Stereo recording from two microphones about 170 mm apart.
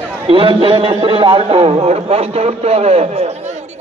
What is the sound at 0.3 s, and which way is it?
A man's voice, 30° right (ahead or behind).